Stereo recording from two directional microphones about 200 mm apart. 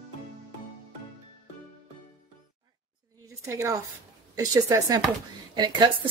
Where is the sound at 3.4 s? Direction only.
15° right (ahead or behind).